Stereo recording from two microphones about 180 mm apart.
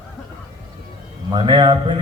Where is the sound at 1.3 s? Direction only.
30° right (ahead or behind).